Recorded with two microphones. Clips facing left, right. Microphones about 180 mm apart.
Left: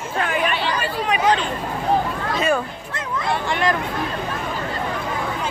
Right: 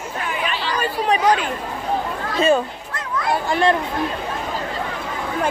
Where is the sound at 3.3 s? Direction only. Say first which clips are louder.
Right 4 dB; 35° right (ahead or behind).